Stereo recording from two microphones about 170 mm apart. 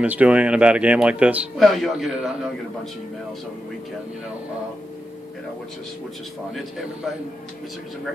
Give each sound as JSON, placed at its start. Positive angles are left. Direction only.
{"t": 0.0, "sound": "a man's voice", "side_deg": -10}